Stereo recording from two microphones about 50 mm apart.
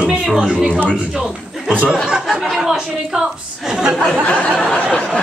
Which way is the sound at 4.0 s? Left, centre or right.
Centre.